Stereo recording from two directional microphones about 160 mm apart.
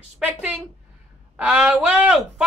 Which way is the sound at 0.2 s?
5° right (ahead or behind).